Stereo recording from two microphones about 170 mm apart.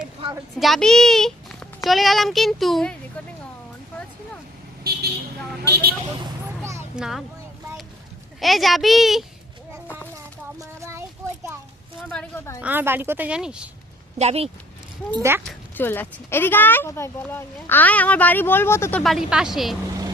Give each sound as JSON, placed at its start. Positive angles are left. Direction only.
{"t": 0.5, "sound": "a child's voice", "side_deg": 0}
{"t": 5.6, "sound": "speech", "side_deg": -75}
{"t": 6.6, "sound": "a sound", "side_deg": -15}
{"t": 6.9, "sound": "a child's voice", "side_deg": -5}
{"t": 8.4, "sound": "a child's voice", "side_deg": 0}
{"t": 9.8, "sound": "a sound", "side_deg": 10}
{"t": 10.6, "sound": "a sound", "side_deg": -15}
{"t": 12.1, "sound": "a child's voice", "side_deg": 5}
{"t": 12.6, "sound": "speech", "side_deg": -10}
{"t": 14.2, "sound": "speech", "side_deg": -40}
{"t": 15.1, "sound": "speech", "side_deg": -15}
{"t": 15.4, "sound": "speech", "side_deg": 10}